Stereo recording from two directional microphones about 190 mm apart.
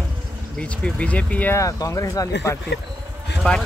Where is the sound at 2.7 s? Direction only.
65° left (ahead or behind).